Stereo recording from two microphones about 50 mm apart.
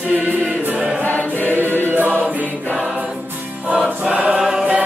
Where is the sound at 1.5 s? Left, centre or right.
Right.